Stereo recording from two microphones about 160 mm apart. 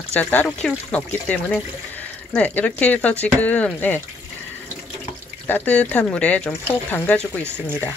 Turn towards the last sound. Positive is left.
turn(degrees=10)  # may be behind; listen again after turning